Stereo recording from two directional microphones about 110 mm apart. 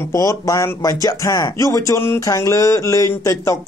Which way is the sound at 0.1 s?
30° left (ahead or behind).